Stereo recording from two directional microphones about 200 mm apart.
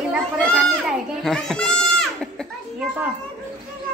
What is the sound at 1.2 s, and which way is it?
Goat, centre (ahead or behind).